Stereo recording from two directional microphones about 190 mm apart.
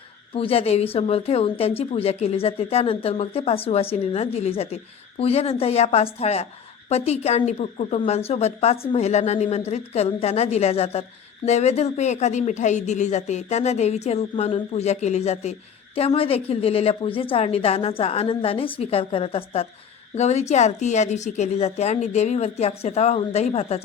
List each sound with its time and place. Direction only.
0.3 s a woman's voice: 30° left (ahead or behind)